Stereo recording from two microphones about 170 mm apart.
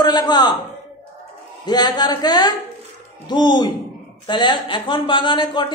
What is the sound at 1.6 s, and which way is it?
A man's voice, 25° left (ahead or behind).